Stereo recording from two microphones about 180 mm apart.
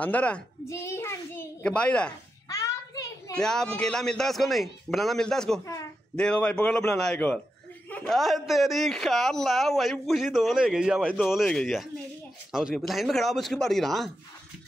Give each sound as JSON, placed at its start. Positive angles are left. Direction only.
{"t": 0.0, "sound": "a child's voice", "side_deg": 5}
{"t": 2.4, "sound": "a sound", "side_deg": 20}
{"t": 3.3, "sound": "a man's voice", "side_deg": 5}